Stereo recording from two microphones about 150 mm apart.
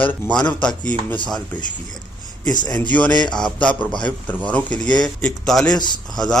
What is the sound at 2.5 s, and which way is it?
Speech, 25° left (ahead or behind).